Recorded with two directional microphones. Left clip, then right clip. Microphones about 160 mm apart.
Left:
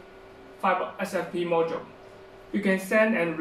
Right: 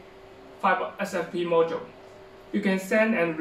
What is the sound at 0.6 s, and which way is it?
Speech, centre (ahead or behind).